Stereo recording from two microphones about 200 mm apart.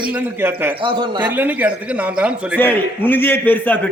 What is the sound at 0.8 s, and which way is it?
Speech, 25° right (ahead or behind).